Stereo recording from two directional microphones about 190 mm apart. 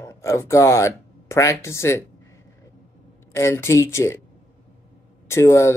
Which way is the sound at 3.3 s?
15° left (ahead or behind).